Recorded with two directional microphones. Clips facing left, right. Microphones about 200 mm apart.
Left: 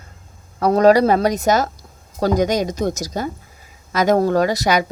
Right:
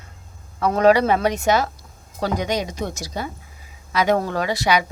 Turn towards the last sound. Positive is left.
turn(degrees=40)  # may be behind; listen again after turning